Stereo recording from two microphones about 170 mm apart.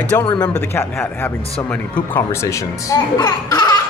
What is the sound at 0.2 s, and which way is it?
Speech, 25° left (ahead or behind).